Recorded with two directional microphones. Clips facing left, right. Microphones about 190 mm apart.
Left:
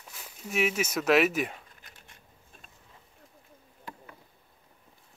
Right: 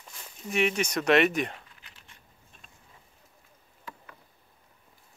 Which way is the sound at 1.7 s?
45° left (ahead or behind).